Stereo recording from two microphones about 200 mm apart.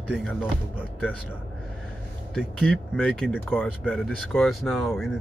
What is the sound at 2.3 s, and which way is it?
Speech, 5° left (ahead or behind).